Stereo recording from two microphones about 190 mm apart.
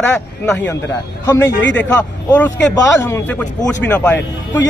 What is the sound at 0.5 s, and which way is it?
Speech, 10° left (ahead or behind).